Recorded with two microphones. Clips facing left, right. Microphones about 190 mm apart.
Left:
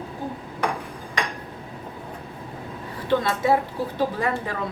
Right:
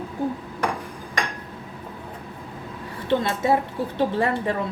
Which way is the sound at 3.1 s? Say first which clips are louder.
Even; 25° right (ahead or behind).